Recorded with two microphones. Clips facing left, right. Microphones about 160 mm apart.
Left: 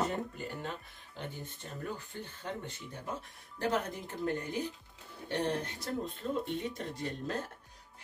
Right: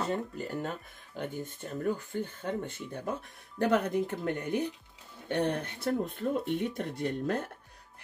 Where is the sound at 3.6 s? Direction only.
60° right (ahead or behind).